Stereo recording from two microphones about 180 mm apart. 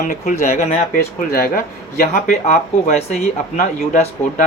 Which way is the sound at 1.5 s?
50° left (ahead or behind).